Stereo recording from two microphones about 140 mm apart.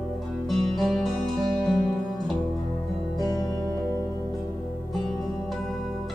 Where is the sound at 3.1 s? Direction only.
30° left (ahead or behind).